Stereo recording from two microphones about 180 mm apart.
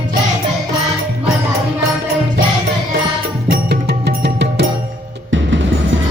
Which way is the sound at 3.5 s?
60° right (ahead or behind).